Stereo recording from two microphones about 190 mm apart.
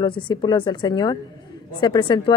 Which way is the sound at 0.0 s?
25° left (ahead or behind).